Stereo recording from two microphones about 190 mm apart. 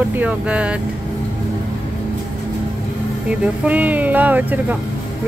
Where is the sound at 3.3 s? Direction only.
10° right (ahead or behind).